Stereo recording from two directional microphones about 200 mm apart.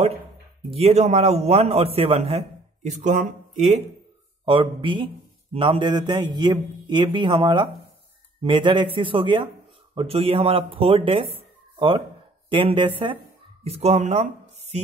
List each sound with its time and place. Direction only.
0.7 s a man's voice: 30° right (ahead or behind)
4.5 s a man's voice: 25° right (ahead or behind)
12.4 s a man's voice: 25° right (ahead or behind)